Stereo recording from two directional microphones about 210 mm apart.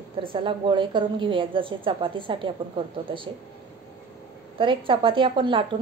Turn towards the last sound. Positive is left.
turn(degrees=-25)  # may be behind; listen again after turning